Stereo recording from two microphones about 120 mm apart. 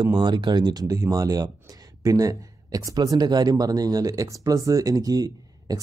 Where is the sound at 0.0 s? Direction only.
40° right (ahead or behind).